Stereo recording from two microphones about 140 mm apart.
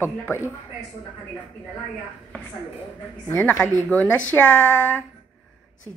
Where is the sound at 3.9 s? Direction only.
10° left (ahead or behind).